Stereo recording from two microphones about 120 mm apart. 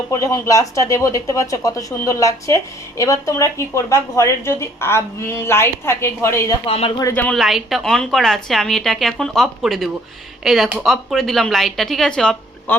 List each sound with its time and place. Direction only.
0.1 s speech: 25° left (ahead or behind)
6.7 s speech: 50° left (ahead or behind)
7.1 s a woman's voice: 15° left (ahead or behind)
7.3 s speech: centre (ahead or behind)